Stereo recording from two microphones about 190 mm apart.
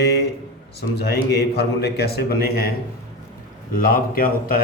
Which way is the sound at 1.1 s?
60° left (ahead or behind).